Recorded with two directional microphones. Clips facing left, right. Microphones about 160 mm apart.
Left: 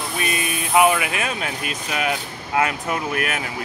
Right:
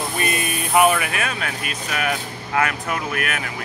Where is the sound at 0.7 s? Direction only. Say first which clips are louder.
Even; 10° left (ahead or behind).